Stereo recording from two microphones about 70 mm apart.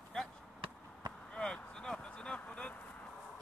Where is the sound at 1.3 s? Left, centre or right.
Centre.